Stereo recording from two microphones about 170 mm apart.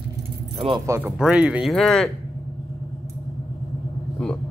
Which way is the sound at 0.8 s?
15° right (ahead or behind).